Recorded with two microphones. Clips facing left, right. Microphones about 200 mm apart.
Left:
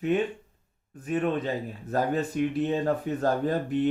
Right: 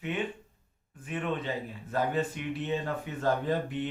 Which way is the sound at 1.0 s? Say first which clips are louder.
Left 6 dB; 40° left (ahead or behind).